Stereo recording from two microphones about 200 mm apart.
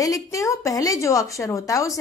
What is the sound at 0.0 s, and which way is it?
A woman's voice, 15° left (ahead or behind).